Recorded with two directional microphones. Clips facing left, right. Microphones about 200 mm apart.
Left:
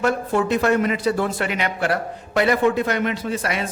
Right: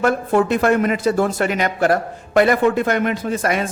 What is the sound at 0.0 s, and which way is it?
Speech, 55° right (ahead or behind).